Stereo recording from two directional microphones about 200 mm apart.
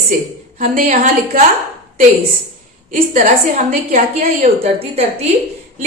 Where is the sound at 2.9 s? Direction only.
40° right (ahead or behind).